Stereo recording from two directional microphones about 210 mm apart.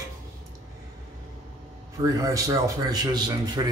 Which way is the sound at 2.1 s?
15° right (ahead or behind).